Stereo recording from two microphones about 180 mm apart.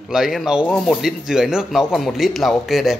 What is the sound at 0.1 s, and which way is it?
Speech, centre (ahead or behind).